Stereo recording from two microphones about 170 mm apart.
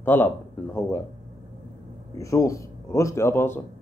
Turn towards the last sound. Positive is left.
turn(degrees=15)  # may be behind; listen again after turning